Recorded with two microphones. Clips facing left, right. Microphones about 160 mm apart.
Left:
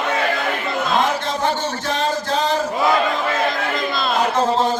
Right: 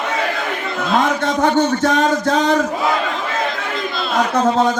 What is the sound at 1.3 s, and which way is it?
Speech, 30° left (ahead or behind).